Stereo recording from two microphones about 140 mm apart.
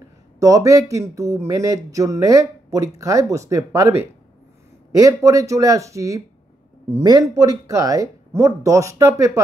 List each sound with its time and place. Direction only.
0.4 s speech: 25° right (ahead or behind)